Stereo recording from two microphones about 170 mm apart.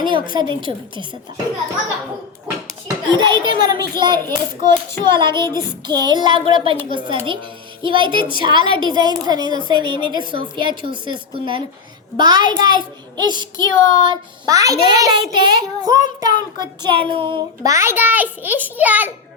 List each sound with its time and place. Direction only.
0.0 s a child's voice: 25° right (ahead or behind)
2.8 s a child's voice: 25° right (ahead or behind); by 19.1 s 10° right (ahead or behind)